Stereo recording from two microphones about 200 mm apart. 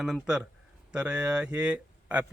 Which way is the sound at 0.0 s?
Centre (ahead or behind).